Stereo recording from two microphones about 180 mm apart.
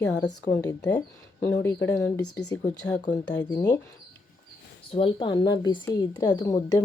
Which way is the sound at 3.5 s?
20° left (ahead or behind).